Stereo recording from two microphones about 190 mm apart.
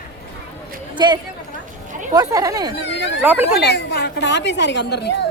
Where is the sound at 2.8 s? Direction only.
70° left (ahead or behind).